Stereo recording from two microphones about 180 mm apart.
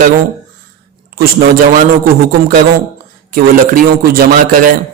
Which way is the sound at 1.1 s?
50° right (ahead or behind).